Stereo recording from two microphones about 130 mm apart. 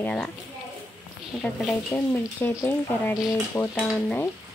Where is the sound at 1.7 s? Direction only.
15° left (ahead or behind).